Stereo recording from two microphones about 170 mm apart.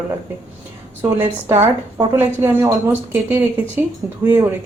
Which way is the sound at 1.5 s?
15° right (ahead or behind).